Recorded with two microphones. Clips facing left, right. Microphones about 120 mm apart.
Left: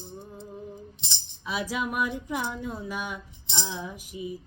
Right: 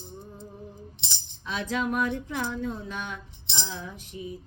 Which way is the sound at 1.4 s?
10° left (ahead or behind).